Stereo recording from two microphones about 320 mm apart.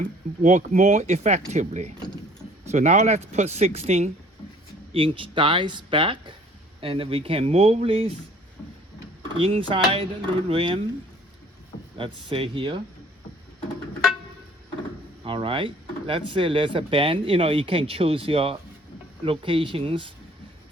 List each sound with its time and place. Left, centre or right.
0.0 s speech: right
9.4 s speech: centre
11.9 s speech: centre
15.2 s speech: centre